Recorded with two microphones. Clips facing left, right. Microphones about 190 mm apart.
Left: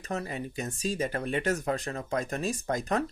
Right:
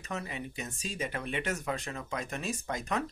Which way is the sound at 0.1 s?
40° left (ahead or behind).